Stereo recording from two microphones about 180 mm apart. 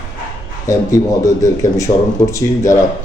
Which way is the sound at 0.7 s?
15° left (ahead or behind).